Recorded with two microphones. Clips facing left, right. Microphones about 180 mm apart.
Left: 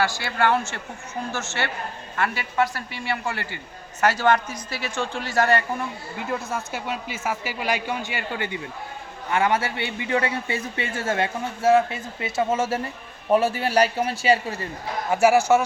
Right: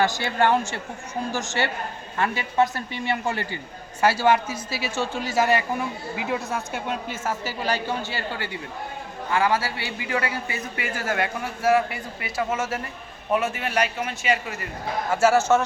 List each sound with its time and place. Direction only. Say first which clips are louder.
0.0 s a man's voice: right 1 dB; 20° right (ahead or behind); by 14.7 s 30° left (ahead or behind)
15.1 s a man's voice: left 2 dB; 15° left (ahead or behind)